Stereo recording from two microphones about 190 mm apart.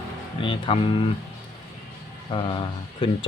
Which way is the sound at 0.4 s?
25° left (ahead or behind).